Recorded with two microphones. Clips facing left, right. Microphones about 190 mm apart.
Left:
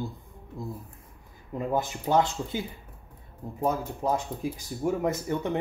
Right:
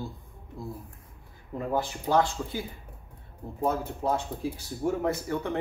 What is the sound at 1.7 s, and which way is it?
Speech, 20° left (ahead or behind).